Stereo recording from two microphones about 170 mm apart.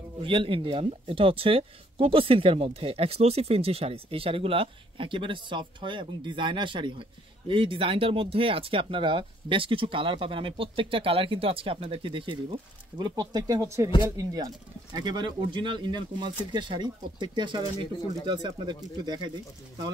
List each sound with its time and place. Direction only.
0.2 s speech: 30° right (ahead or behind)